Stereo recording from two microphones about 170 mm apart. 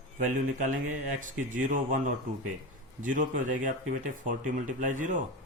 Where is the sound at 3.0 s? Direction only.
50° right (ahead or behind).